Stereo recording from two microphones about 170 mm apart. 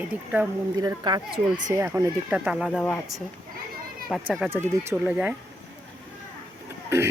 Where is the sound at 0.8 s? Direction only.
25° right (ahead or behind).